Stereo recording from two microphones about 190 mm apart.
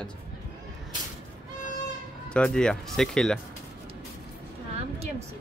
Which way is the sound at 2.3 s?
5° left (ahead or behind).